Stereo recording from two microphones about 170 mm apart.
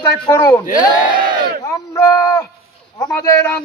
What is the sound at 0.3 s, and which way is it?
Music, 20° left (ahead or behind).